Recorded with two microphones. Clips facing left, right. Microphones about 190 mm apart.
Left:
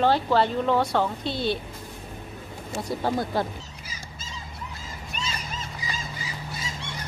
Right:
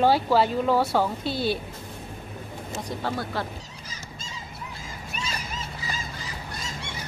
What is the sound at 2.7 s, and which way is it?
Speech, 15° left (ahead or behind).